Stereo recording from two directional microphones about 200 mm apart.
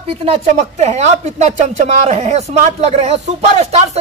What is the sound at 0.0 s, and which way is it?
Speech, 30° right (ahead or behind).